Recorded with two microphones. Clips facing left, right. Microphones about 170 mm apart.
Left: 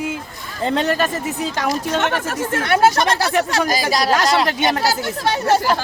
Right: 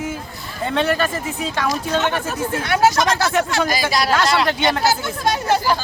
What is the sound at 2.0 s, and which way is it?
Speech, 70° left (ahead or behind).